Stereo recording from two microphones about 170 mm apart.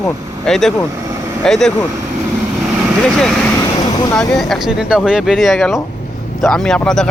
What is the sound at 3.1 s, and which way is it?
Speech, 5° left (ahead or behind).